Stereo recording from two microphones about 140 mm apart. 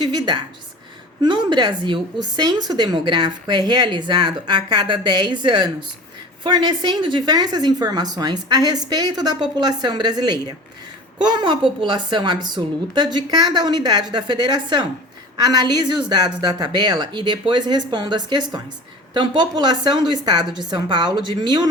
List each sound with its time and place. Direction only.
0.0 s a woman's voice: 30° right (ahead or behind)